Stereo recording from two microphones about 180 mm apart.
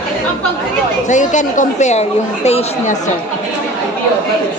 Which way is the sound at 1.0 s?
45° left (ahead or behind).